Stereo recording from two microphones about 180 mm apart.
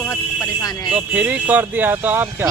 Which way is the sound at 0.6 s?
20° left (ahead or behind).